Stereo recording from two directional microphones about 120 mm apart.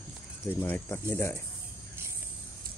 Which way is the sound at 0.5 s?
15° left (ahead or behind).